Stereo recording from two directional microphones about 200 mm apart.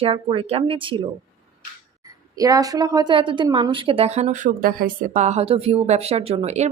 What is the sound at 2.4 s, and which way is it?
A woman's voice, 15° right (ahead or behind).